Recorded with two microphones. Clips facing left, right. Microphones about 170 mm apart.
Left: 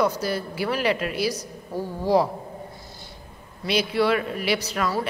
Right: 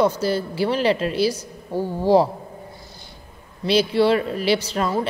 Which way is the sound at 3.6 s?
30° right (ahead or behind).